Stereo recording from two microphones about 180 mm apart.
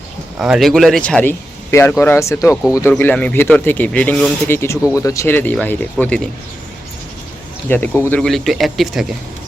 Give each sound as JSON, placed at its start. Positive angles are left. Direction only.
{"t": 0.3, "sound": "speech", "side_deg": -5}
{"t": 7.7, "sound": "speech", "side_deg": 10}